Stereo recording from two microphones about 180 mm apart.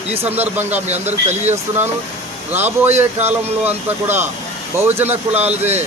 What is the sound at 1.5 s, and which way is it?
Speech, 10° right (ahead or behind).